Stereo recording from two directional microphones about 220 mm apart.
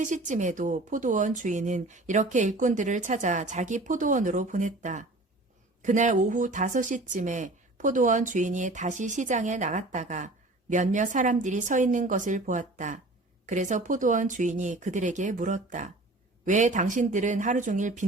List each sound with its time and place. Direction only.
0.0 s speech: 35° right (ahead or behind)